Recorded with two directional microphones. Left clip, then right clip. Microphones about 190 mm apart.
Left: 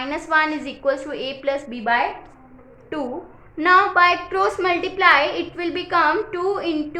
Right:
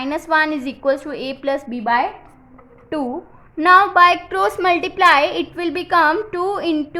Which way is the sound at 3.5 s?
35° right (ahead or behind).